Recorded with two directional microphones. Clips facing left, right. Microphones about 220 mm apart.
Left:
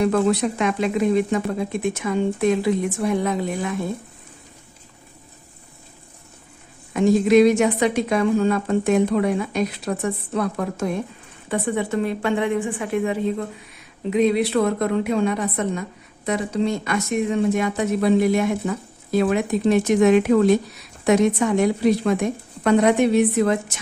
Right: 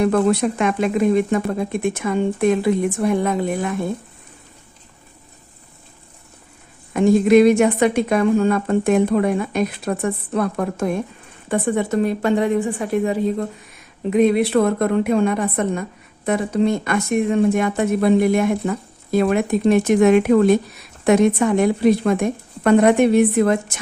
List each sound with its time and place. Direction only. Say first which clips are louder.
0.0 s a woman's voice: right 2 dB; 50° right (ahead or behind)
6.9 s a woman's voice: right 2 dB; 55° right (ahead or behind); by 13.3 s 35° right (ahead or behind)
14.1 s a woman's voice: right 3 dB; 50° right (ahead or behind)